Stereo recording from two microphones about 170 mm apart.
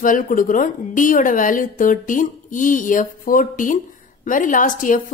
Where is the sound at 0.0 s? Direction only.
50° left (ahead or behind).